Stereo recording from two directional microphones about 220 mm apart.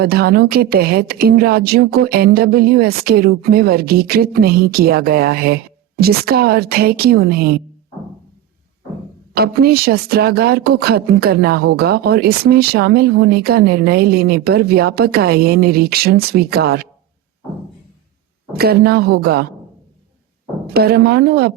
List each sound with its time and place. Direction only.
0.0 s speech: 45° right (ahead or behind)
9.3 s speech: 45° right (ahead or behind)
18.5 s speech: 45° right (ahead or behind)
20.7 s speech: 45° right (ahead or behind)